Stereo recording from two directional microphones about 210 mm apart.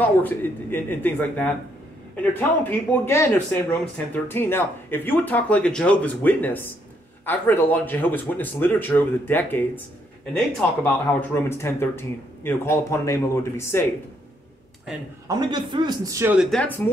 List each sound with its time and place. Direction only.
0.0 s speech: 10° left (ahead or behind)
15.2 s a man's voice: 20° right (ahead or behind)
16.4 s speech: 5° left (ahead or behind)